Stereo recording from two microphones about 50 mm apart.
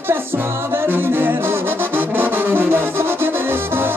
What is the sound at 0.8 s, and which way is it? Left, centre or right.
Brass instrument, right.